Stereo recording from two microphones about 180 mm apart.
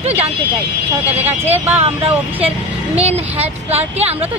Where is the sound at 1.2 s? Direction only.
10° right (ahead or behind).